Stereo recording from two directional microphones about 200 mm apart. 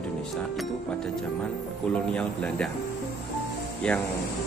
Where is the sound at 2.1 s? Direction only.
5° left (ahead or behind).